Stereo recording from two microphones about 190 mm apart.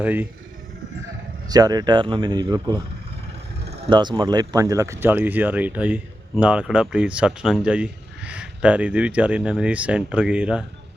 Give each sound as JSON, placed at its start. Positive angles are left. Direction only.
{"t": 0.0, "sound": "speech", "side_deg": -10}
{"t": 1.5, "sound": "speech", "side_deg": -20}
{"t": 3.8, "sound": "speech", "side_deg": -25}